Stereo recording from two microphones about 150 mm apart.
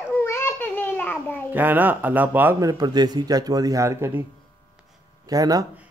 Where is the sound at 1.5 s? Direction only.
10° right (ahead or behind).